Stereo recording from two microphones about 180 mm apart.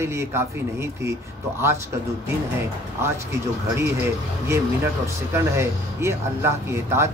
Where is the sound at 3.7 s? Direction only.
15° right (ahead or behind).